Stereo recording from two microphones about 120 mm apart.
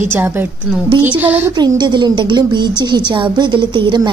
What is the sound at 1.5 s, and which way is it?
A woman's voice, 35° right (ahead or behind).